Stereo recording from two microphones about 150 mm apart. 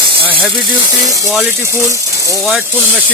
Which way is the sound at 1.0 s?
20° right (ahead or behind).